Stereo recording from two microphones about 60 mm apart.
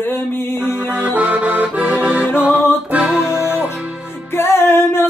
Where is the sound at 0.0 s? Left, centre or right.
Left.